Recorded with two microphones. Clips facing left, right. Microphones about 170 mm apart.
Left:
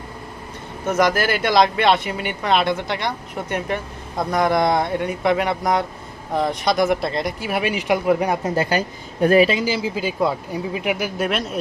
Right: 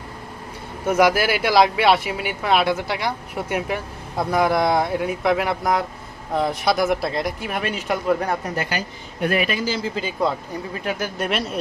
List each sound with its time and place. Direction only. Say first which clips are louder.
0.9 s speech: right 1 dB; 10° right (ahead or behind); by 8.5 s 15° left (ahead or behind)
9.2 s a man's voice: left 7 dB; 35° left (ahead or behind)
9.6 s speech: left 2 dB; 10° left (ahead or behind)
11.2 s speech: left 1 dB; centre (ahead or behind)